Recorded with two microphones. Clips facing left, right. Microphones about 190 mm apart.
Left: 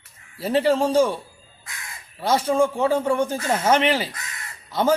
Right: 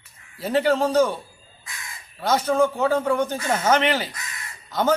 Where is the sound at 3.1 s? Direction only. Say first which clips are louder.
Left 1 dB; 30° left (ahead or behind).